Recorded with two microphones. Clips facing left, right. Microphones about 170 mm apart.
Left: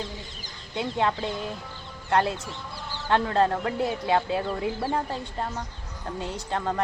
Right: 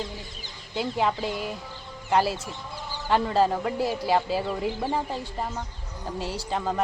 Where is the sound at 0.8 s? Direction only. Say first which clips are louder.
Even; 5° right (ahead or behind).